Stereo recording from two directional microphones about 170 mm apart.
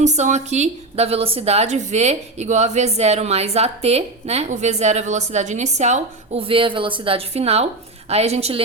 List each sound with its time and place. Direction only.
0.0 s a woman's voice: 45° right (ahead or behind)